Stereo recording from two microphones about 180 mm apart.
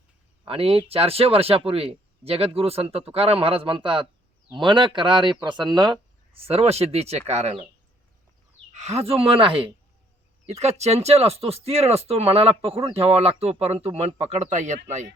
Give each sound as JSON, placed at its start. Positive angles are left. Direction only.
{"t": 0.4, "sound": "speech", "side_deg": -30}
{"t": 8.7, "sound": "speech", "side_deg": -40}